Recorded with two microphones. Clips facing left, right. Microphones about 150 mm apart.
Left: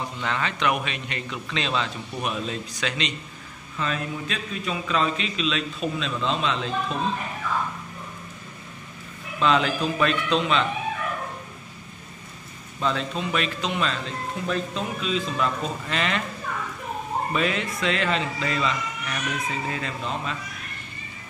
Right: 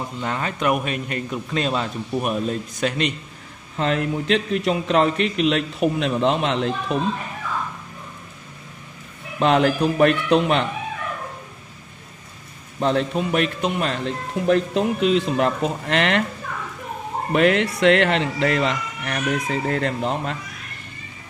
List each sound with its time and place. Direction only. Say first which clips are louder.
0.2 s a man's voice: right 2 dB; 40° right (ahead or behind)
3.7 s a man's voice: right 7 dB; 65° right (ahead or behind)
9.4 s a man's voice: right 5 dB; 60° right (ahead or behind)
13.2 s a man's voice: right 5 dB; 55° right (ahead or behind)
17.3 s speech: right 11 dB; 70° right (ahead or behind)